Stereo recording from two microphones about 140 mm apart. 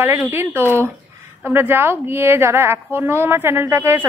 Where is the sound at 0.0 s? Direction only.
15° right (ahead or behind).